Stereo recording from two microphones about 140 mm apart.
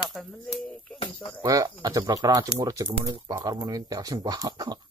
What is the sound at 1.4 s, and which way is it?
Speech, 25° right (ahead or behind).